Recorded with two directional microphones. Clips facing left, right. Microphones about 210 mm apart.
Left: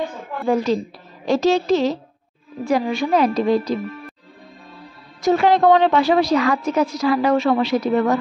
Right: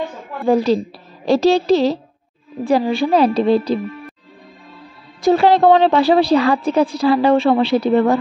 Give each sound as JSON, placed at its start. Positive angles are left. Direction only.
{"t": 0.5, "sound": "a woman's voice", "side_deg": -35}
{"t": 5.2, "sound": "a woman's voice", "side_deg": -30}